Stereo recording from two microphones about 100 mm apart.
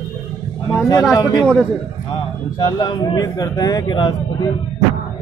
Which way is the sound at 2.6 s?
45° left (ahead or behind).